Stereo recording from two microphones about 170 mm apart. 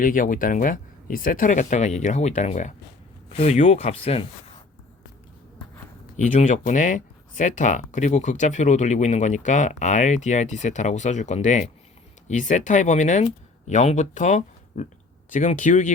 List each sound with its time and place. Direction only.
0.0 s speech: 50° left (ahead or behind); by 4.3 s 35° left (ahead or behind)
6.1 s speech: 45° left (ahead or behind)